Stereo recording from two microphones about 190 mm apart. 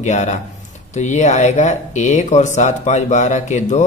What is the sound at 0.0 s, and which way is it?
Speech, 40° left (ahead or behind).